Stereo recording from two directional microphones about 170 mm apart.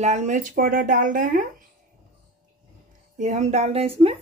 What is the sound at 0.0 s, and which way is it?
Speech, 45° right (ahead or behind).